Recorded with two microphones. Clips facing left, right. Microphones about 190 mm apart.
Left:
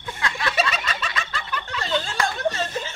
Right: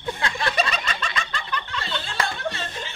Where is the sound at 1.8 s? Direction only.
40° left (ahead or behind).